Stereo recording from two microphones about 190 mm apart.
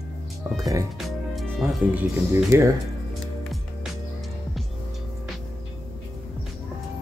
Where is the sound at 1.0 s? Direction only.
Centre (ahead or behind).